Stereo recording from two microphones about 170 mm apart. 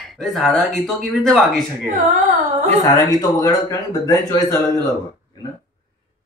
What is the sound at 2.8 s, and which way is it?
A man's voice, 25° left (ahead or behind).